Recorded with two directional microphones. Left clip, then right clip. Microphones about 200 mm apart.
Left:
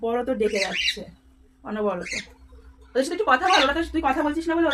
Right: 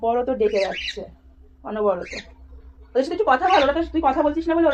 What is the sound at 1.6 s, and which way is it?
Speech, 30° left (ahead or behind).